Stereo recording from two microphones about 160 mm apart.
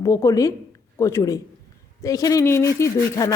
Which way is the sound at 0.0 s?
20° left (ahead or behind).